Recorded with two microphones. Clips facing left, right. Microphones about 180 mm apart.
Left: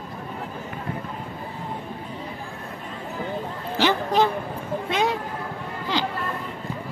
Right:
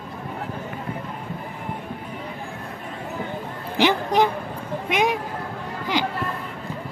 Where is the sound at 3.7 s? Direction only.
15° right (ahead or behind).